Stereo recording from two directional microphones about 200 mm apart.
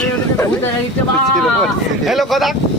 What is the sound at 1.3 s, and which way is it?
Speech, centre (ahead or behind).